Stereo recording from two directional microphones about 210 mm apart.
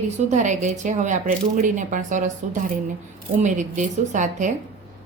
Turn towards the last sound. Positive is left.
turn(degrees=-35)  # may be behind; listen again after turning